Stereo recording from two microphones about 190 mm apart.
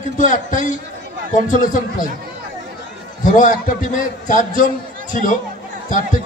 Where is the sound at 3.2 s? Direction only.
45° left (ahead or behind).